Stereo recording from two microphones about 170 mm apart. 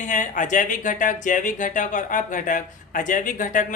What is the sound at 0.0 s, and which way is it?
Speech, 45° left (ahead or behind).